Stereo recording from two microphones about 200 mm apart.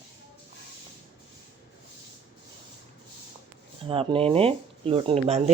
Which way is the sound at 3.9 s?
30° right (ahead or behind).